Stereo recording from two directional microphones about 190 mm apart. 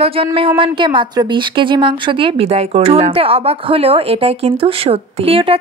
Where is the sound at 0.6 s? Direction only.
25° right (ahead or behind).